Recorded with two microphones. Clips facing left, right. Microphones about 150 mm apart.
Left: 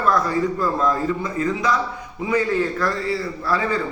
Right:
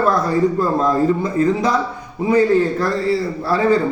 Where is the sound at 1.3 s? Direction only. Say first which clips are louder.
Right 5 dB; 30° right (ahead or behind).